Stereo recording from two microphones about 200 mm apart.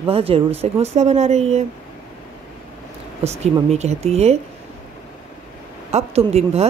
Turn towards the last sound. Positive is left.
turn(degrees=-30)  # may be behind; listen again after turning